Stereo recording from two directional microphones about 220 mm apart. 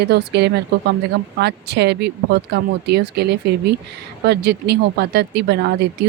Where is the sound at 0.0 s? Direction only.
50° right (ahead or behind).